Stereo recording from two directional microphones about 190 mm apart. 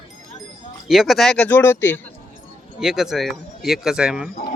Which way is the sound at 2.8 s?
Centre (ahead or behind).